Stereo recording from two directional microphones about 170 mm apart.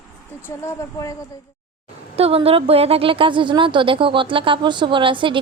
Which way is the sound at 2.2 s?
35° right (ahead or behind).